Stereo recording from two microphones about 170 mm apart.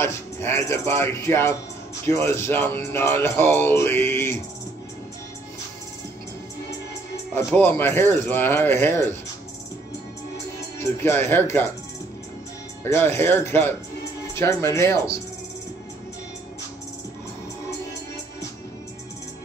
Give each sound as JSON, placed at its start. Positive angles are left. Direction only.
{"t": 0.0, "sound": "speech", "side_deg": 15}
{"t": 7.3, "sound": "speech", "side_deg": 15}
{"t": 10.8, "sound": "speech", "side_deg": 15}
{"t": 12.8, "sound": "speech", "side_deg": 15}